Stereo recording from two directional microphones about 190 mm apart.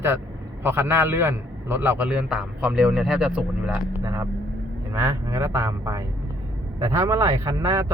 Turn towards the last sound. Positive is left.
turn(degrees=-15)  # may be behind; listen again after turning